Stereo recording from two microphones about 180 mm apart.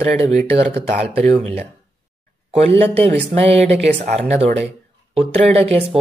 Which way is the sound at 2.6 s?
35° right (ahead or behind).